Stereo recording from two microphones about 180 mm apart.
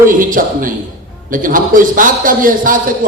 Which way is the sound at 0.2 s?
50° right (ahead or behind).